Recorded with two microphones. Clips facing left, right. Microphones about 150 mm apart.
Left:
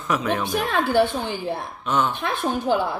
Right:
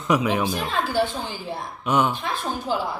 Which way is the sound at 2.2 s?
60° left (ahead or behind).